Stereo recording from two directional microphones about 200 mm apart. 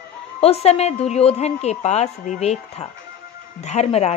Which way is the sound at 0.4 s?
30° left (ahead or behind).